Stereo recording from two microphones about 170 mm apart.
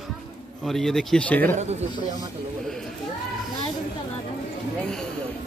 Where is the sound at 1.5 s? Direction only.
40° right (ahead or behind).